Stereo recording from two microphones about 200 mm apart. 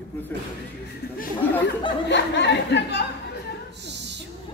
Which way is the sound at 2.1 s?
60° left (ahead or behind).